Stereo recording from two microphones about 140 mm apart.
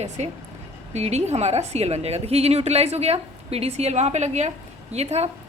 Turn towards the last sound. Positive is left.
turn(degrees=-50)  # may be behind; listen again after turning